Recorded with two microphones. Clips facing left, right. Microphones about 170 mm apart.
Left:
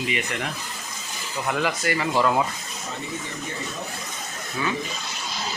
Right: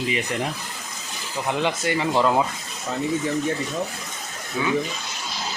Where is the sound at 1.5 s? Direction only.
25° right (ahead or behind).